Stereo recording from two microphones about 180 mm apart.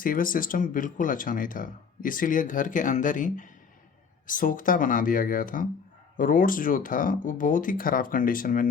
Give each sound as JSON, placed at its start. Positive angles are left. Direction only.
{"t": 0.0, "sound": "speech", "side_deg": 50}